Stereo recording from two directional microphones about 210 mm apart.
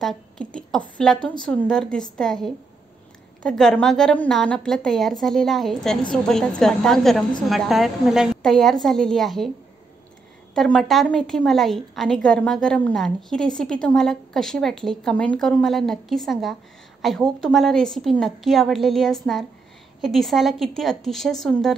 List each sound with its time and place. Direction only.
0.0 s a woman's voice: 5° left (ahead or behind)
10.5 s a woman's voice: centre (ahead or behind)